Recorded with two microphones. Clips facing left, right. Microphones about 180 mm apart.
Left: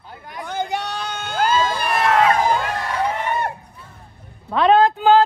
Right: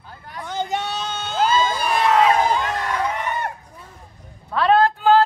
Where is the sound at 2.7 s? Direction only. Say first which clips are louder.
Left 1 dB; 30° left (ahead or behind).